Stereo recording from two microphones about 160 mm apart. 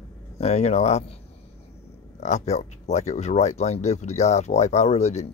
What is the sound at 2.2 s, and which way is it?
Speech, 45° left (ahead or behind).